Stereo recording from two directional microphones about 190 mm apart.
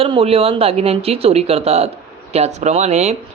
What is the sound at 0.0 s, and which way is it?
Speech, 30° right (ahead or behind).